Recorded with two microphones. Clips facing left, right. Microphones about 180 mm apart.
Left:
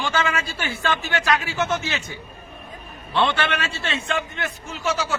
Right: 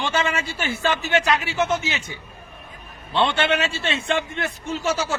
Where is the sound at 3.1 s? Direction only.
25° right (ahead or behind).